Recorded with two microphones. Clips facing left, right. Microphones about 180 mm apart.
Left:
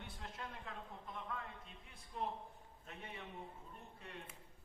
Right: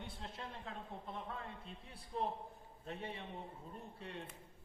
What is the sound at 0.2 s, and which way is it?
A man's voice, 30° right (ahead or behind).